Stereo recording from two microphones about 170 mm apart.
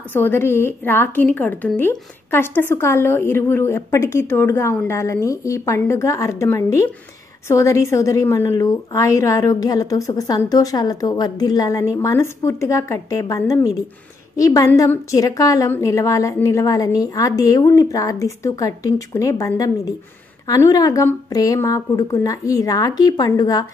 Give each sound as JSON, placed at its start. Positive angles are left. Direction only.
{"t": 0.1, "sound": "a woman's voice", "side_deg": 10}